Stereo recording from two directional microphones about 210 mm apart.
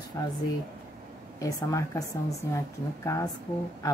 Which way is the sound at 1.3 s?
15° left (ahead or behind).